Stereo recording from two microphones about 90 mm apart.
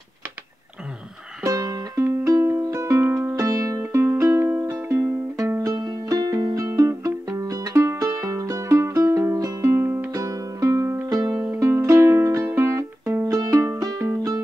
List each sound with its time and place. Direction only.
1.4 s music: 40° right (ahead or behind)
3.8 s music: 25° right (ahead or behind); by 9.7 s 40° right (ahead or behind)
9.7 s music: 25° right (ahead or behind)
10.1 s music: 40° right (ahead or behind)
11.1 s music: 40° right (ahead or behind)
11.3 s music: 20° right (ahead or behind)
11.6 s music: 35° right (ahead or behind)